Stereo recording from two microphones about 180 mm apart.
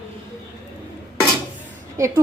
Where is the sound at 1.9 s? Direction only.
15° right (ahead or behind).